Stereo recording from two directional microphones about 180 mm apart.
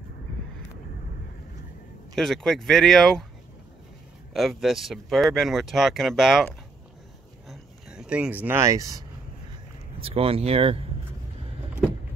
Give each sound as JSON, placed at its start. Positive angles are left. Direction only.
{"t": 2.1, "sound": "speech", "side_deg": 0}
{"t": 4.3, "sound": "speech", "side_deg": 0}
{"t": 7.4, "sound": "a sound", "side_deg": 0}
{"t": 9.9, "sound": "speech", "side_deg": -30}